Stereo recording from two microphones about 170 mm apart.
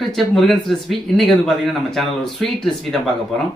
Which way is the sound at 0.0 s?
Centre (ahead or behind).